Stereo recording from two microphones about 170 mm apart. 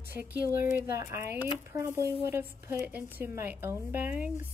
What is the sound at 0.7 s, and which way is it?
Speech, 15° right (ahead or behind).